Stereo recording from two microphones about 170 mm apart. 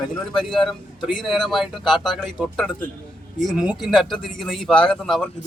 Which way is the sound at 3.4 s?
5° right (ahead or behind).